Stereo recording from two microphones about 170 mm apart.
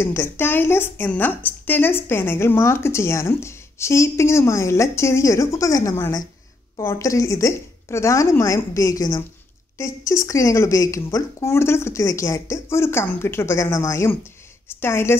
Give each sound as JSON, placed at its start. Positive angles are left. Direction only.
{"t": 0.0, "sound": "a woman's voice", "side_deg": 15}